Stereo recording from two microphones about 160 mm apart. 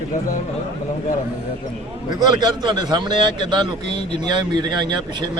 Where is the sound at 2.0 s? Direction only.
30° right (ahead or behind).